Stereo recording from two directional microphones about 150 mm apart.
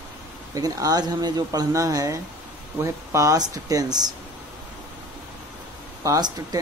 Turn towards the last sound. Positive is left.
turn(degrees=-25)  # may be behind; listen again after turning